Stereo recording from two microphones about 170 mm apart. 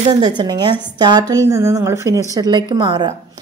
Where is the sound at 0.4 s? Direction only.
25° right (ahead or behind).